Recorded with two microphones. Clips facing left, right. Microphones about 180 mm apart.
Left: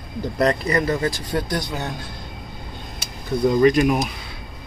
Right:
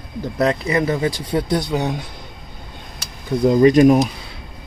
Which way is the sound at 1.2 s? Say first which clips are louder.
Right 5 dB; 25° right (ahead or behind).